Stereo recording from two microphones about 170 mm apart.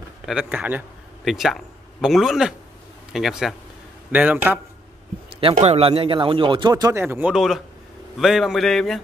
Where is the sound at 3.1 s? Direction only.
Centre (ahead or behind).